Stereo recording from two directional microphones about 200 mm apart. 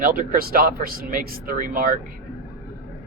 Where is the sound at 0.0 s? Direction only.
40° right (ahead or behind).